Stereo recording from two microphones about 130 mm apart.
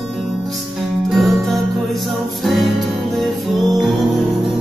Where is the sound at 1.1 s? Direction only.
Centre (ahead or behind).